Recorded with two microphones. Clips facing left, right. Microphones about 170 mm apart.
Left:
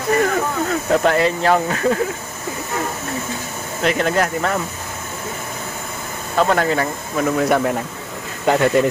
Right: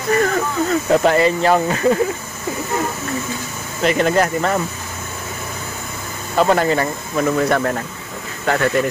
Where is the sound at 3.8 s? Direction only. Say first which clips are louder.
Right 2 dB; centre (ahead or behind).